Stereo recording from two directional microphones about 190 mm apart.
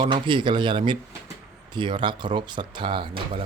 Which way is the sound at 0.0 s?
25° right (ahead or behind).